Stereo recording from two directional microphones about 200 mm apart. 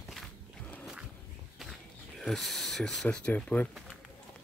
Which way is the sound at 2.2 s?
Centre (ahead or behind).